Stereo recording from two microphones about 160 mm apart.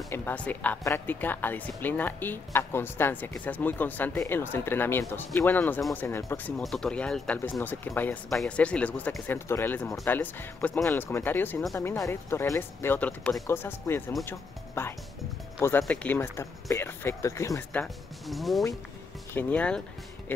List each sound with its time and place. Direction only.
0.1 s speech: 10° left (ahead or behind)
6.6 s speech: centre (ahead or behind)
18.2 s speech: centre (ahead or behind)